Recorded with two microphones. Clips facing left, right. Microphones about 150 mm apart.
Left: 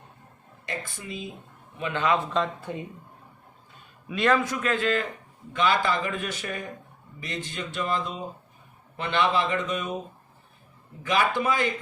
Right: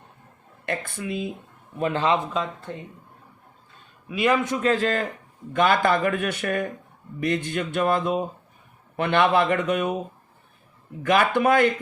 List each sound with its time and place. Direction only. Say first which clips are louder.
0.6 s speech: right 6 dB; 60° right (ahead or behind)
1.8 s a man's voice: right 3 dB; 35° right (ahead or behind)
2.6 s speech: left 1 dB; 10° left (ahead or behind)
4.1 s a man's voice: right 2 dB; 10° right (ahead or behind); by 5.0 s 40° right (ahead or behind)
5.5 s speech: right 4 dB; 50° right (ahead or behind)
11.0 s speech: right 5 dB; 60° right (ahead or behind)